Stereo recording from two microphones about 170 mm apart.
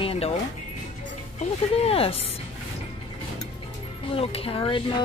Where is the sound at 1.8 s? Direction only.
35° left (ahead or behind).